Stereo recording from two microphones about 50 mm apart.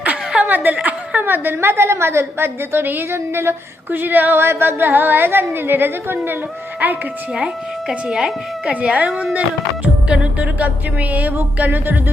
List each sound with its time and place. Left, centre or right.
0.0 s chuckle: right
1.2 s speech: right
3.1 s a sound: right
3.9 s speech: right
6.8 s music: right
7.3 s a woman's voice: centre
9.8 s music: right